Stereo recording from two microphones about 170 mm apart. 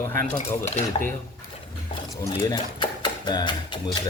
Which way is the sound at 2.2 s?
20° left (ahead or behind).